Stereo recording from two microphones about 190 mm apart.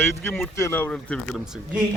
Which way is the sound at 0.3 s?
10° left (ahead or behind).